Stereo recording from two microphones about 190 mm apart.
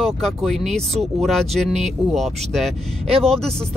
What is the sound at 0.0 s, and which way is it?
Speech, centre (ahead or behind).